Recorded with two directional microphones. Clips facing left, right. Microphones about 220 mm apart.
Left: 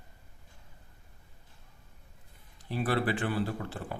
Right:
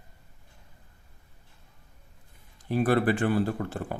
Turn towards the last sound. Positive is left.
turn(degrees=-45)  # may be behind; listen again after turning